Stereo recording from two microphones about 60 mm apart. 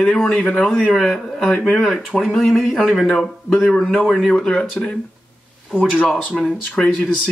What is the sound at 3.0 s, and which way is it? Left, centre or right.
Speech, centre.